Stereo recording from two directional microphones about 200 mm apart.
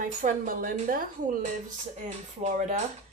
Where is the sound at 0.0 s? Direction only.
40° right (ahead or behind).